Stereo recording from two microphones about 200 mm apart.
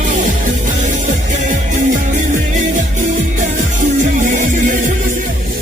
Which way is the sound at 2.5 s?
40° right (ahead or behind).